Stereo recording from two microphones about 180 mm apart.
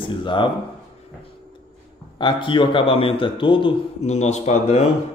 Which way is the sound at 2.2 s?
25° left (ahead or behind).